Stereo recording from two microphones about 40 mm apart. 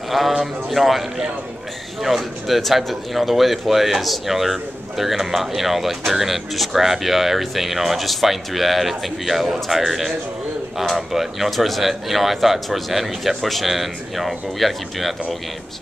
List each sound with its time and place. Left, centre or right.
0.4 s a man's voice: centre